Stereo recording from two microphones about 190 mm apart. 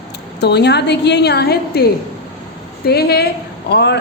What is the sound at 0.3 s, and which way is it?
A woman's voice, 60° left (ahead or behind).